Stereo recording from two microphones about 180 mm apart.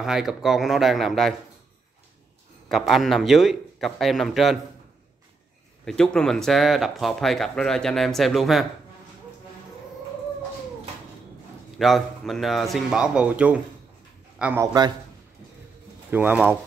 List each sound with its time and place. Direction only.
0.0 s speech: 5° right (ahead or behind)
2.7 s speech: centre (ahead or behind)
5.9 s speech: 5° left (ahead or behind)
11.8 s speech: centre (ahead or behind); by 14.9 s 20° right (ahead or behind)
16.1 s speech: 10° right (ahead or behind)